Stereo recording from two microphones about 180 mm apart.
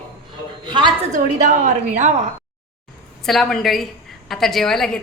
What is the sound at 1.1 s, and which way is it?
A woman's voice, 40° right (ahead or behind).